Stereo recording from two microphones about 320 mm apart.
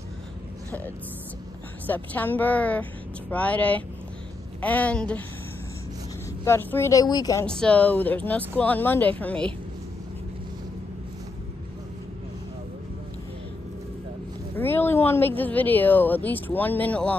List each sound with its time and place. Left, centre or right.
0.7 s a woman's voice: centre
6.4 s a woman's voice: centre
14.6 s speech: centre